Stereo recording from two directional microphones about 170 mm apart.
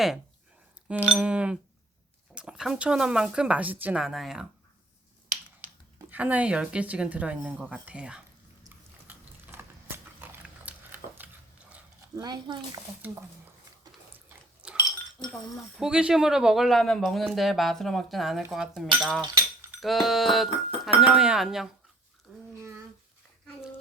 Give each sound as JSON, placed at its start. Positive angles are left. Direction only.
{"t": 0.9, "sound": "speech", "side_deg": -5}
{"t": 6.1, "sound": "speech", "side_deg": -10}
{"t": 9.0, "sound": "a sound", "side_deg": -10}
{"t": 10.2, "sound": "biting", "side_deg": -10}
{"t": 12.1, "sound": "speech", "side_deg": -25}
{"t": 14.6, "sound": "dishes", "side_deg": -5}
{"t": 15.8, "sound": "speech", "side_deg": -5}
{"t": 22.3, "sound": "a sound", "side_deg": -5}